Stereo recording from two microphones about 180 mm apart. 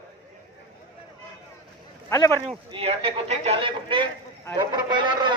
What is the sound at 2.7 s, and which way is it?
A man's voice, 30° right (ahead or behind).